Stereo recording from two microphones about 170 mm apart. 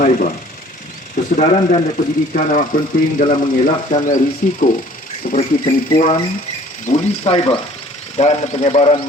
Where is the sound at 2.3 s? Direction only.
50° left (ahead or behind).